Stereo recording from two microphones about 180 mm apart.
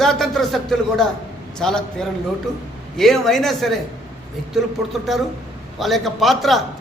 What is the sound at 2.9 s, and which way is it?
Speech, centre (ahead or behind).